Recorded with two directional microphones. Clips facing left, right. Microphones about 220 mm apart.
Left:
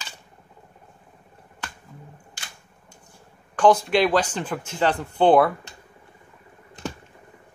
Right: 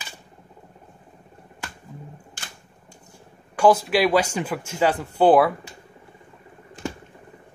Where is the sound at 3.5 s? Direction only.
5° right (ahead or behind).